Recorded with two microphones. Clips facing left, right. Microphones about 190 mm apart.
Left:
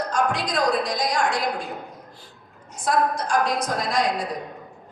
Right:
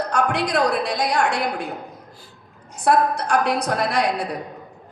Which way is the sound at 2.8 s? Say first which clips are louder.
Right 4 dB; 65° right (ahead or behind).